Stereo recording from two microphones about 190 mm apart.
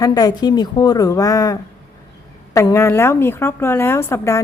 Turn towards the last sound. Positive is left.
turn(degrees=15)  # may be behind; listen again after turning